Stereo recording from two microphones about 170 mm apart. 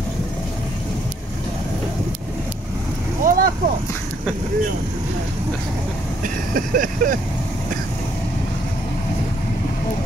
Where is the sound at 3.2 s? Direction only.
55° right (ahead or behind).